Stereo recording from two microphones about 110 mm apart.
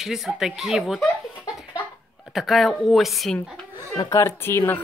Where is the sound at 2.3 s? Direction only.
Centre (ahead or behind).